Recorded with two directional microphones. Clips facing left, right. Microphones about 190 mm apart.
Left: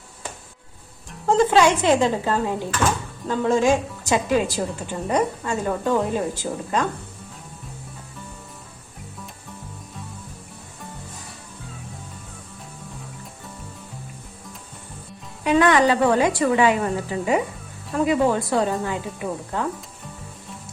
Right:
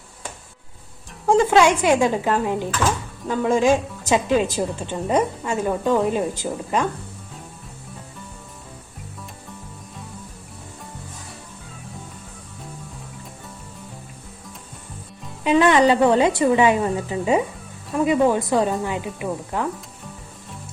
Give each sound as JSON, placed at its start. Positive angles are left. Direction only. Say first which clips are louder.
{"t": 1.3, "sound": "a woman's voice", "louder": "right 1 dB", "side_deg": -10}
{"t": 15.4, "sound": "a woman's voice", "louder": "right 2 dB", "side_deg": -20}